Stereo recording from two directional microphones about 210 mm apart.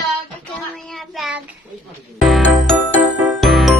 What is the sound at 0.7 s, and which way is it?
Speech, centre (ahead or behind).